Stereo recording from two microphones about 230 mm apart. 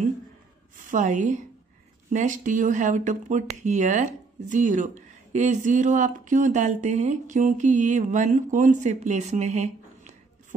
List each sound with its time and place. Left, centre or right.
0.7 s a woman's voice: right